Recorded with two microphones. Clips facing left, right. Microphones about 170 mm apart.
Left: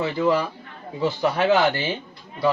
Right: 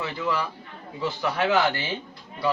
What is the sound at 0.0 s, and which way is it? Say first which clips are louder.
A man's voice: left 7 dB; 35° left (ahead or behind).